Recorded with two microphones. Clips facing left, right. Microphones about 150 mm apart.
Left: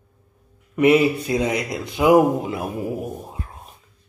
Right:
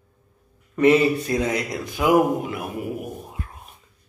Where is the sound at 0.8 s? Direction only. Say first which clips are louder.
Left 1 dB; 15° left (ahead or behind).